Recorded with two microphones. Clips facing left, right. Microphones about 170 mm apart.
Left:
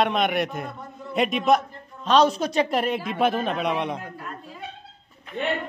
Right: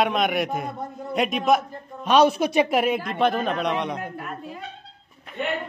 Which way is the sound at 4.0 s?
65° right (ahead or behind).